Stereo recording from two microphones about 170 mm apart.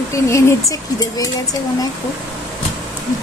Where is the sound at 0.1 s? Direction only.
15° left (ahead or behind).